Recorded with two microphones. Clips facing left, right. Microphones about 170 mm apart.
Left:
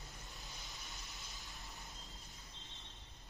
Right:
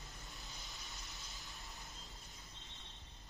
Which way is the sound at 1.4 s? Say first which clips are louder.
Even; centre (ahead or behind).